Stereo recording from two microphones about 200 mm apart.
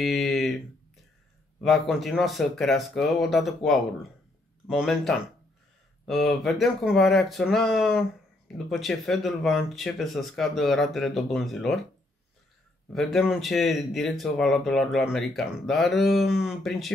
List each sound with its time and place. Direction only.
0.0 s a sound: centre (ahead or behind)
1.6 s speech: centre (ahead or behind)
12.9 s speech: centre (ahead or behind)